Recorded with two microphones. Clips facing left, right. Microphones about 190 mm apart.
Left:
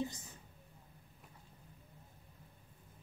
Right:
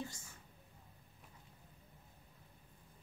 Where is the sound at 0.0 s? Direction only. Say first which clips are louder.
Left 6 dB; 20° left (ahead or behind).